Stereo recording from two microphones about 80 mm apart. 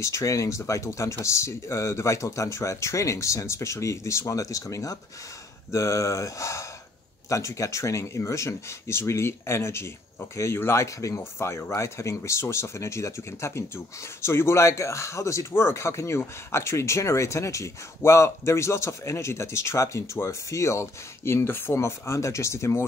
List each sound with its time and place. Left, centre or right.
0.0 s speech: left